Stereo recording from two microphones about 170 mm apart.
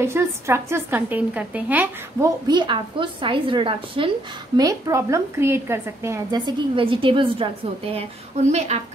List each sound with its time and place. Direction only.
0.0 s a woman's voice: 15° right (ahead or behind); by 4.1 s 30° right (ahead or behind)
4.6 s a woman's voice: 20° right (ahead or behind); by 8.8 s 40° right (ahead or behind)